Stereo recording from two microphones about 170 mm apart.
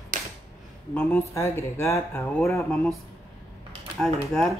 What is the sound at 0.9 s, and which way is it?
Speech, 10° left (ahead or behind).